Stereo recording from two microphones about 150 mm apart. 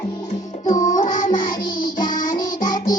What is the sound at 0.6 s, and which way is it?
Music, 25° left (ahead or behind).